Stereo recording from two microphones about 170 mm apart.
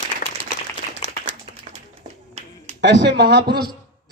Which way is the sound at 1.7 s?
35° right (ahead or behind).